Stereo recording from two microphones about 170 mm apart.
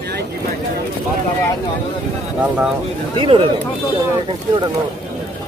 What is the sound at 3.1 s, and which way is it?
Speech, 30° right (ahead or behind).